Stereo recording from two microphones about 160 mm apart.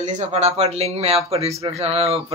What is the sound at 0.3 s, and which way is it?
Speech, 40° right (ahead or behind).